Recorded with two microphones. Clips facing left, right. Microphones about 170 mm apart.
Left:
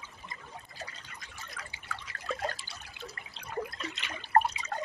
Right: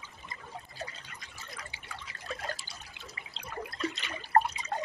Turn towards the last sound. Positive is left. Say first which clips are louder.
# right 1 dB
turn(degrees=-35)  # may be behind; listen again after turning